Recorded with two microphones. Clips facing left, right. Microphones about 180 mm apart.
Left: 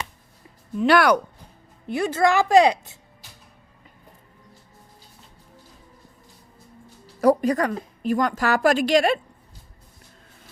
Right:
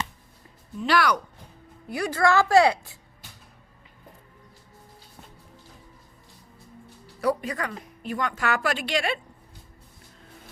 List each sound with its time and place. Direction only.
0.8 s speech: 55° left (ahead or behind)
1.9 s a woman's voice: 25° left (ahead or behind)
7.2 s a woman's voice: 45° left (ahead or behind)